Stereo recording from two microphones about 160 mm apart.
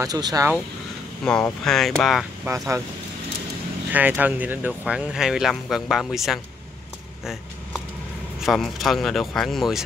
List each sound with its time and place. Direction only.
0.0 s speech: 25° right (ahead or behind)
1.2 s speech: 5° left (ahead or behind)
2.5 s speech: 15° right (ahead or behind)
3.9 s speech: 10° right (ahead or behind)
8.4 s speech: centre (ahead or behind)